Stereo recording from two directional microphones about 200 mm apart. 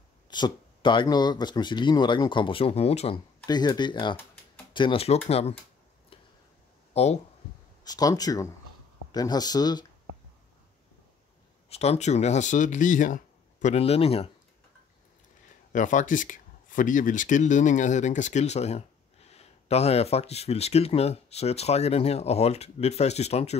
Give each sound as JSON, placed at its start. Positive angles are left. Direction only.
{"t": 0.3, "sound": "speech", "side_deg": 20}
{"t": 3.4, "sound": "speech", "side_deg": 20}
{"t": 6.9, "sound": "a sound", "side_deg": 30}
{"t": 7.8, "sound": "speech", "side_deg": 20}
{"t": 11.7, "sound": "speech", "side_deg": 30}
{"t": 15.7, "sound": "speech", "side_deg": 40}